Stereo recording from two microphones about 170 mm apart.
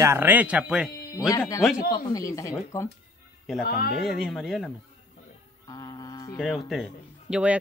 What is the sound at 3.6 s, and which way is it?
Speech, 60° left (ahead or behind).